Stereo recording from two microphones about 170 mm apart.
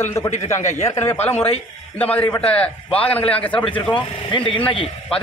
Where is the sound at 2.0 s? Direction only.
10° left (ahead or behind).